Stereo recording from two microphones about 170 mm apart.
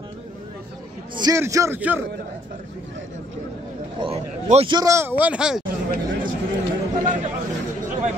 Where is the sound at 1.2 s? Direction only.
20° right (ahead or behind).